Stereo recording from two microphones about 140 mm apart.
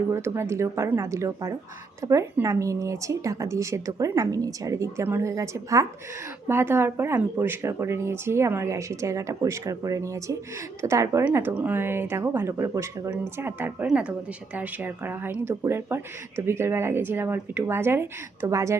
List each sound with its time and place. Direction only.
0.1 s speech: 20° right (ahead or behind)